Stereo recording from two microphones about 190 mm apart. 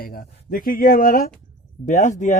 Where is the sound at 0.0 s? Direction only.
50° left (ahead or behind).